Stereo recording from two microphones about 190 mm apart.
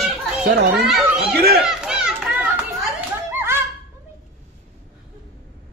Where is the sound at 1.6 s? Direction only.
5° right (ahead or behind).